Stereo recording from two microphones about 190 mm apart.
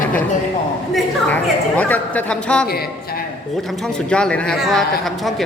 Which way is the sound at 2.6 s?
55° left (ahead or behind).